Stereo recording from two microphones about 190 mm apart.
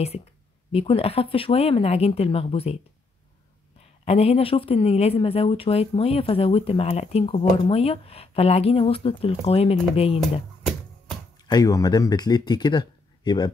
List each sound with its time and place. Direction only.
0.7 s a woman's voice: 30° left (ahead or behind)
4.0 s a woman's voice: 35° left (ahead or behind)
11.4 s speech: 20° left (ahead or behind)